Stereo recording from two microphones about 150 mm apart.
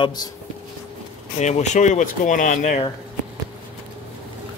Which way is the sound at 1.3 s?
50° left (ahead or behind).